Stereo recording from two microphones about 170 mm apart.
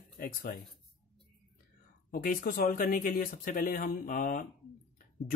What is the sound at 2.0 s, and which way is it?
Speech, 55° left (ahead or behind).